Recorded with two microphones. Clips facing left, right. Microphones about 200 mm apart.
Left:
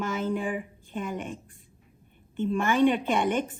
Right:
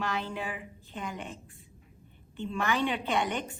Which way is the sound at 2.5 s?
50° left (ahead or behind).